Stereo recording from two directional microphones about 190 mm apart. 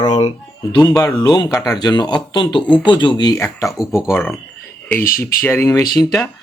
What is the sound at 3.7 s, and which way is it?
Speech, centre (ahead or behind).